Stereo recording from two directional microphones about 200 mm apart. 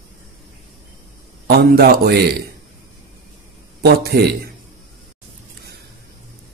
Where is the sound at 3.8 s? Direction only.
55° right (ahead or behind).